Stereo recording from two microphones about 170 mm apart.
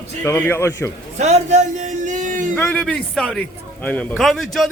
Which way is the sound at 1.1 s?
40° right (ahead or behind).